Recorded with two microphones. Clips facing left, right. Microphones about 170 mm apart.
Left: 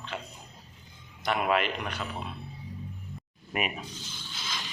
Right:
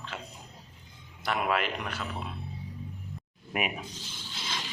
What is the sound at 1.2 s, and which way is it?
Speech, centre (ahead or behind).